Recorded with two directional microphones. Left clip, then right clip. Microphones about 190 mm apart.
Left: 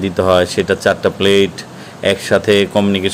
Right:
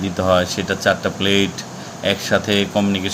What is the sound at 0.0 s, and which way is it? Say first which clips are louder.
Speech: left 4 dB; 50° left (ahead or behind).